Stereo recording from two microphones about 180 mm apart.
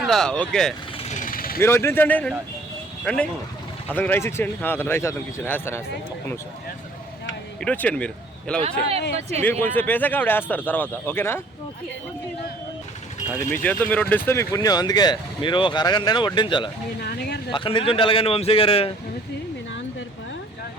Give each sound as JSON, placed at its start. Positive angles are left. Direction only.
{"t": 0.0, "sound": "speech", "side_deg": 0}
{"t": 1.0, "sound": "vehicle", "side_deg": 45}
{"t": 1.6, "sound": "speech", "side_deg": 15}
{"t": 7.6, "sound": "speech", "side_deg": 10}
{"t": 13.5, "sound": "speech", "side_deg": 10}
{"t": 17.0, "sound": "a sound", "side_deg": 60}
{"t": 17.5, "sound": "a man's voice", "side_deg": 30}